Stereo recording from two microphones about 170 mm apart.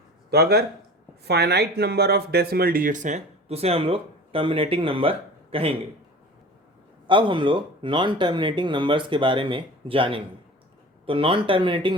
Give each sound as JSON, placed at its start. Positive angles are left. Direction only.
{"t": 0.3, "sound": "speech", "side_deg": -70}
{"t": 7.1, "sound": "speech", "side_deg": -30}